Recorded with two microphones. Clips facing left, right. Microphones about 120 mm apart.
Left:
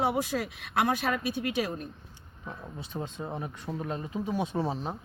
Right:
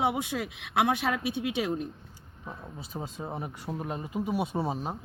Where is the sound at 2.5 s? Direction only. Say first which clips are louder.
Left 1 dB; 5° right (ahead or behind).